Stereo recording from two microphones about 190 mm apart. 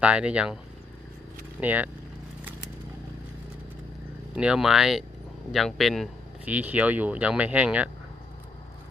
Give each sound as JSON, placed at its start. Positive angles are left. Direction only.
{"t": 0.0, "sound": "speech", "side_deg": -5}
{"t": 1.6, "sound": "speech", "side_deg": -10}
{"t": 4.4, "sound": "speech", "side_deg": -5}